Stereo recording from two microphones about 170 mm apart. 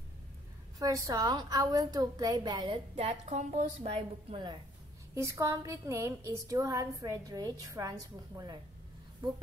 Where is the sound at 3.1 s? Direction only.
40° right (ahead or behind).